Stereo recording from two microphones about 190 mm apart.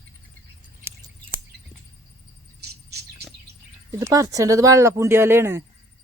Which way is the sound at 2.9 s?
60° right (ahead or behind).